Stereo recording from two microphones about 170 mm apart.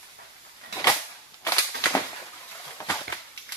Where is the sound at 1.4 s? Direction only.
15° left (ahead or behind).